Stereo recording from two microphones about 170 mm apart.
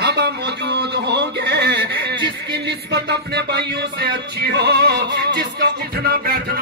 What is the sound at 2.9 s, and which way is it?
Music, 80° right.